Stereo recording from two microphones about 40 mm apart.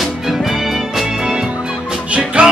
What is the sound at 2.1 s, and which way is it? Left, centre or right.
Music, right.